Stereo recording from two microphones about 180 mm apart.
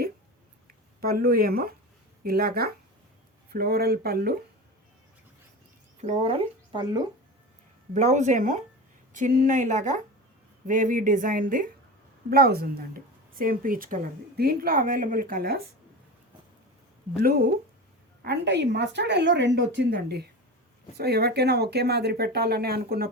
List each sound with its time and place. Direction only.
1.0 s speech: 55° right (ahead or behind)
6.0 s speech: 35° right (ahead or behind)
7.9 s a woman's voice: 40° right (ahead or behind); by 15.6 s 55° right (ahead or behind)
17.2 s speech: 55° right (ahead or behind)
18.2 s speech: 70° right (ahead or behind); by 23.0 s 55° right (ahead or behind)